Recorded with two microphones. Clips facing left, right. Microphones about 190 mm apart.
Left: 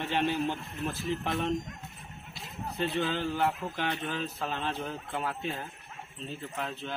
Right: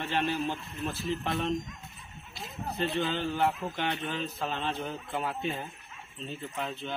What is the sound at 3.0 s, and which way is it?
A man's voice, 5° left (ahead or behind).